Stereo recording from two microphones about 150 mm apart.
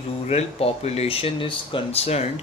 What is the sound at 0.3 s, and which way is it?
Speech, 45° left (ahead or behind).